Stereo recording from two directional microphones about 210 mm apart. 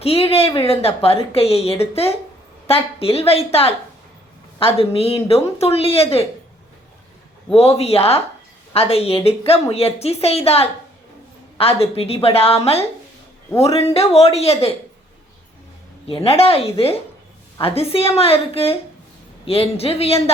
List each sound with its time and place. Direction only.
0.0 s a woman's voice: 30° left (ahead or behind)
7.5 s a woman's voice: 30° left (ahead or behind)
11.8 s a woman's voice: 30° left (ahead or behind)
16.0 s a woman's voice: 25° left (ahead or behind)